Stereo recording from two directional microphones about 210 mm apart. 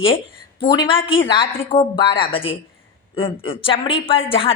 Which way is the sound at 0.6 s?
25° left (ahead or behind).